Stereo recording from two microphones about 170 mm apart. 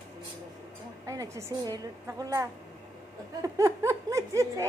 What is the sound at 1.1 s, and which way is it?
Speech, 20° right (ahead or behind).